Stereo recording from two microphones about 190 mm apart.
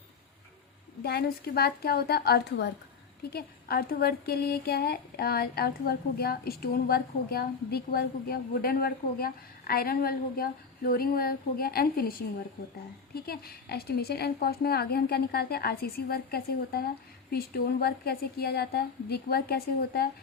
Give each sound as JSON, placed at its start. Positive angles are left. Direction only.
{"t": 1.0, "sound": "a woman's voice", "side_deg": 55}
{"t": 13.1, "sound": "a woman's voice", "side_deg": 55}